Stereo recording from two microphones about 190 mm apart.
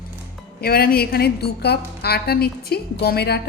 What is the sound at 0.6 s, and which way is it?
A woman's voice, 50° left (ahead or behind).